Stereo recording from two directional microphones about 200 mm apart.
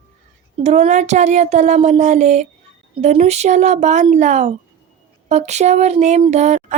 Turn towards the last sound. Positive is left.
turn(degrees=-35)  # may be behind; listen again after turning